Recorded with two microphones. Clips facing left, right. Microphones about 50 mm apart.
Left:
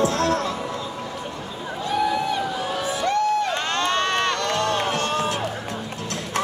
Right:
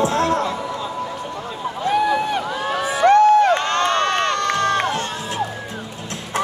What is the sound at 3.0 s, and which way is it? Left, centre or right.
Crowd, right.